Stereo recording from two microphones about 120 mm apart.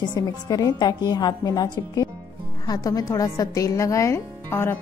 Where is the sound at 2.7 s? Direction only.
30° left (ahead or behind).